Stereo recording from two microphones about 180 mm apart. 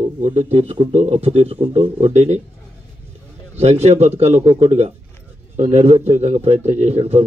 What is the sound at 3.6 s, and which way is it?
A man's voice, 35° right (ahead or behind).